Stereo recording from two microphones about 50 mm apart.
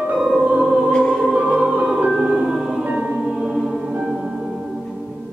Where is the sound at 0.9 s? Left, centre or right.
Centre.